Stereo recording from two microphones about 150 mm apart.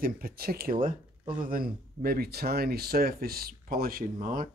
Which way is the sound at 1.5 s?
80° right.